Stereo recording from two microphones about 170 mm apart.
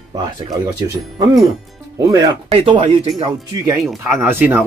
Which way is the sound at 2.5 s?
35° right (ahead or behind).